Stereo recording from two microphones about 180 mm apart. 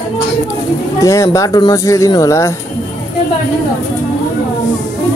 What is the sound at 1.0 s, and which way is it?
Speech, 15° left (ahead or behind).